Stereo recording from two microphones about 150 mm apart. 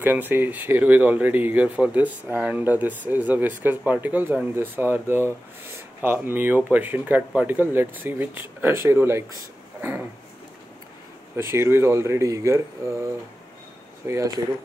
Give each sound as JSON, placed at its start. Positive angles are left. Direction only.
{"t": 0.0, "sound": "speech", "side_deg": -15}
{"t": 9.8, "sound": "a sound", "side_deg": -15}
{"t": 11.3, "sound": "speech", "side_deg": -15}